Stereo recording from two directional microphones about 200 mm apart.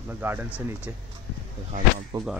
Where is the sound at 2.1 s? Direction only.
20° right (ahead or behind).